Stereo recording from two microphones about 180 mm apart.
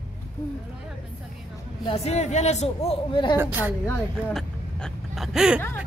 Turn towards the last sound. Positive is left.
turn(degrees=-5)  # may be behind; listen again after turning